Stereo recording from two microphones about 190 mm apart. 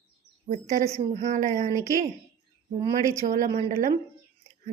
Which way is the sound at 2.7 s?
15° right (ahead or behind).